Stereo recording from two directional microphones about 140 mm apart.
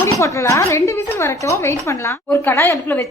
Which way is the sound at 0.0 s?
20° left (ahead or behind).